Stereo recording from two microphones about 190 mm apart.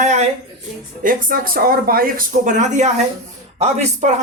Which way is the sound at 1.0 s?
50° right (ahead or behind).